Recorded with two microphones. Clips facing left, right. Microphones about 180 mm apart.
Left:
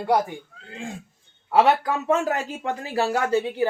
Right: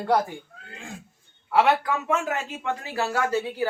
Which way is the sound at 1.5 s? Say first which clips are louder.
Left 2 dB; 35° left (ahead or behind).